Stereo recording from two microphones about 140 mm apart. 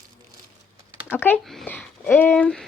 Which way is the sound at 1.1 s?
15° left (ahead or behind).